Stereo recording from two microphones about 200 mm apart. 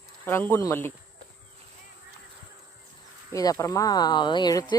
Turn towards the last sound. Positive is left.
turn(degrees=20)  # may be behind; listen again after turning